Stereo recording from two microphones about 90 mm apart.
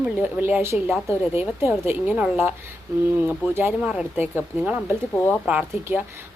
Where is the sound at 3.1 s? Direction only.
25° right (ahead or behind).